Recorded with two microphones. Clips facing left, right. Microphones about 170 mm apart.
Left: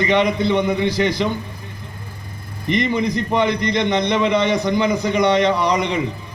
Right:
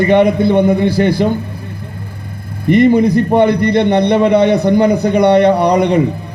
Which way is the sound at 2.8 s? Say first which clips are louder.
Right 12 dB; 55° right (ahead or behind).